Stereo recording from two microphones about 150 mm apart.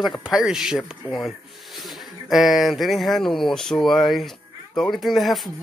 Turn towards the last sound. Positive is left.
turn(degrees=0)  # may be behind; listen again after turning